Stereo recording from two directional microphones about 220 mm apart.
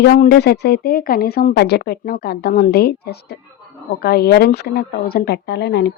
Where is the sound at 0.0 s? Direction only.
50° left (ahead or behind).